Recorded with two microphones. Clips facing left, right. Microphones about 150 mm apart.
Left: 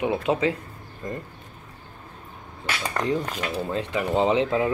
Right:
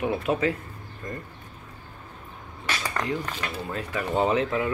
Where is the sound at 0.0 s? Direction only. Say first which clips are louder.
Left 2 dB; 25° left (ahead or behind).